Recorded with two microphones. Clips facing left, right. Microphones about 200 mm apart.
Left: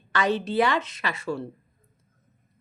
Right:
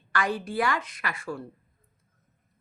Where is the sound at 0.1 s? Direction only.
25° left (ahead or behind).